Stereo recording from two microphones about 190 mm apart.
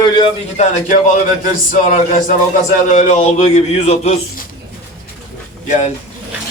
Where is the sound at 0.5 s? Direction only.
35° left (ahead or behind).